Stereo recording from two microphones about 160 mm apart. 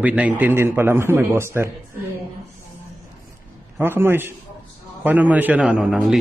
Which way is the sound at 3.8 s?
15° right (ahead or behind).